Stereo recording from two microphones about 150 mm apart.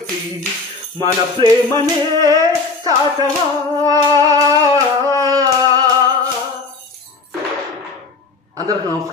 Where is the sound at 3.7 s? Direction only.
25° right (ahead or behind).